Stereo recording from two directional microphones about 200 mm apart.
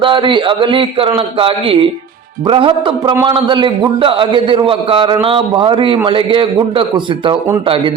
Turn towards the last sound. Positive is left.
turn(degrees=-25)  # may be behind; listen again after turning